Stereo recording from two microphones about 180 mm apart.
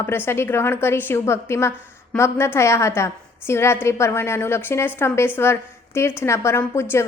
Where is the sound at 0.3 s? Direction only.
15° left (ahead or behind).